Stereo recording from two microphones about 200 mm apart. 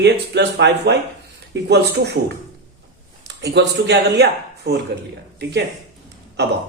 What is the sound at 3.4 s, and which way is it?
Speech, 55° right (ahead or behind).